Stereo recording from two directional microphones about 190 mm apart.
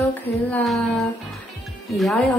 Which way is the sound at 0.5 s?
5° left (ahead or behind).